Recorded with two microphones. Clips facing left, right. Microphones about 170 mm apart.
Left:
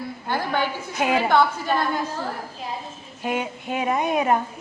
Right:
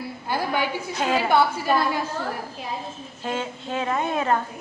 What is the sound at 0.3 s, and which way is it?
Speech, 10° right (ahead or behind).